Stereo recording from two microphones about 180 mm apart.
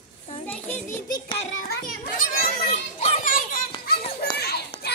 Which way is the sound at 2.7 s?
30° left (ahead or behind).